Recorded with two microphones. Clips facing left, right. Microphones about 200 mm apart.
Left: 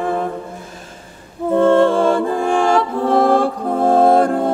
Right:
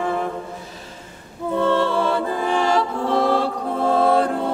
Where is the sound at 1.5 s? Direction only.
50° left (ahead or behind).